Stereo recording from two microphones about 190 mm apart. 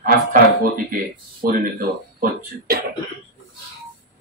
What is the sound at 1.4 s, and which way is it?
Speech, 45° right (ahead or behind).